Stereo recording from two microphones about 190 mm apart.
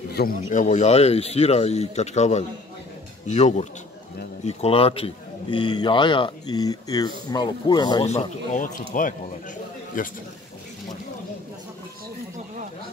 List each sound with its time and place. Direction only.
0.1 s speech: 55° left (ahead or behind)
0.5 s speech: 40° left (ahead or behind); by 8.1 s 20° left (ahead or behind)
8.1 s speech: 40° left (ahead or behind)